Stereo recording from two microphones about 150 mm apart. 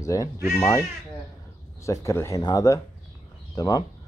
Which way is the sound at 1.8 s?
20° left (ahead or behind).